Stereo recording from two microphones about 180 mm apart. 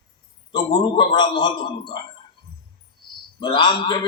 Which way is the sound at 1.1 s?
25° left (ahead or behind).